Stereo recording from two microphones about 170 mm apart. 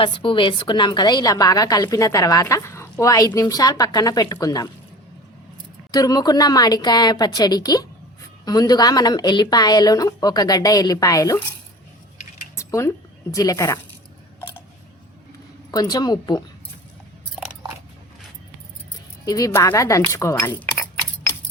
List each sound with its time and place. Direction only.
0.0 s a woman's voice: 30° left (ahead or behind)
5.9 s a woman's voice: 20° left (ahead or behind)
12.5 s a sound: 20° left (ahead or behind)
13.3 s a woman's voice: 20° left (ahead or behind)
15.7 s a woman's voice: 20° left (ahead or behind)
19.2 s speech: 20° left (ahead or behind)